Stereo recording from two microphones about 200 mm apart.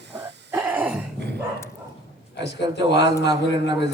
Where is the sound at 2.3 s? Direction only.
60° left (ahead or behind).